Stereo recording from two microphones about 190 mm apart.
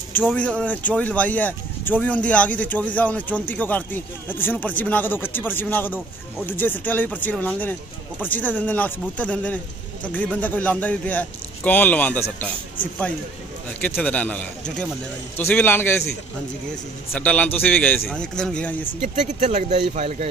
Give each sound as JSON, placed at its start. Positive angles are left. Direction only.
{"t": 0.2, "sound": "speech", "side_deg": 5}
{"t": 13.8, "sound": "speech", "side_deg": 10}
{"t": 17.1, "sound": "speech", "side_deg": 10}
{"t": 19.1, "sound": "speech", "side_deg": -40}